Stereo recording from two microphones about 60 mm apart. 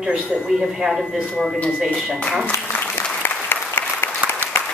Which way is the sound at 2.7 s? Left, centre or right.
Left.